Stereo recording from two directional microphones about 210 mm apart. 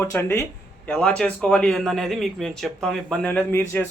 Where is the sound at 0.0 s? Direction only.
10° left (ahead or behind).